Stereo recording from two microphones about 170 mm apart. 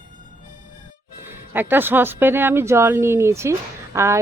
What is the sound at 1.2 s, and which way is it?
Speech, 10° right (ahead or behind).